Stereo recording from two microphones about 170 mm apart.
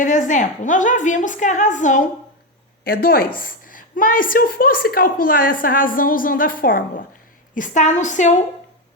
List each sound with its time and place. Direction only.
0.0 s a woman's voice: 50° left (ahead or behind)
2.8 s a woman's voice: 60° left (ahead or behind); by 8.4 s 45° left (ahead or behind)